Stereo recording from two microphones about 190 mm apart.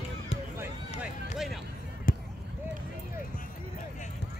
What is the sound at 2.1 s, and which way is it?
Basketball bounce, 45° left (ahead or behind).